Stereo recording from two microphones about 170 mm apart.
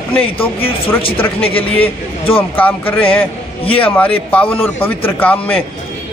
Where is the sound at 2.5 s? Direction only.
10° left (ahead or behind).